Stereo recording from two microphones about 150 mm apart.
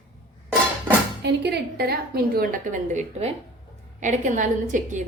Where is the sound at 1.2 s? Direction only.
90° right; by 5.0 s 55° right (ahead or behind).